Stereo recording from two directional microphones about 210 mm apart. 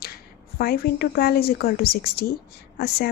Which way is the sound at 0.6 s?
45° left (ahead or behind).